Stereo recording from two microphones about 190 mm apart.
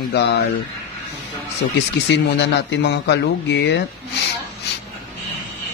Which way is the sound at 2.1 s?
65° left (ahead or behind).